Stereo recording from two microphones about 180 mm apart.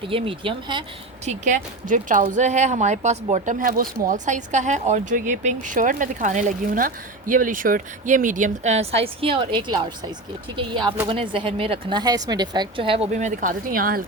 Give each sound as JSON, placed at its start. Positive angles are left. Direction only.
{"t": 0.1, "sound": "a woman's voice", "side_deg": -30}
{"t": 1.2, "sound": "a woman's voice", "side_deg": -40}
{"t": 13.1, "sound": "speech", "side_deg": -45}